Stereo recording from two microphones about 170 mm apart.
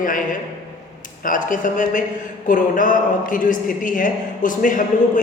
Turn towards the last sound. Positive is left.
turn(degrees=50)  # may be behind; listen again after turning